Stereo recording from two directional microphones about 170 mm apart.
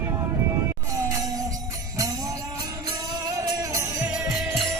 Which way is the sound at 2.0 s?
20° right (ahead or behind).